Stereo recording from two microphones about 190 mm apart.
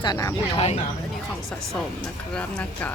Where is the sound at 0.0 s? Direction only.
20° left (ahead or behind).